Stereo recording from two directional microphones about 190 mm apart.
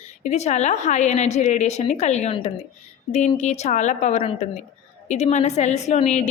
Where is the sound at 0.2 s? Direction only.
35° left (ahead or behind).